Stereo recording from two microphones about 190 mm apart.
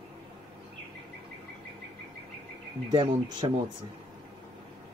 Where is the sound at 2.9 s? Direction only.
25° right (ahead or behind).